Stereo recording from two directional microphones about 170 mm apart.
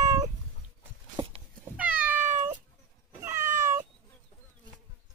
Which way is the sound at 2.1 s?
45° right (ahead or behind).